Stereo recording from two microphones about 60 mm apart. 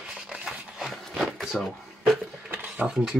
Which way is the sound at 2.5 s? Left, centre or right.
Right.